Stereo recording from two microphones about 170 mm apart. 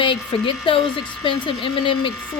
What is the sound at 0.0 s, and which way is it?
Speech, 30° left (ahead or behind).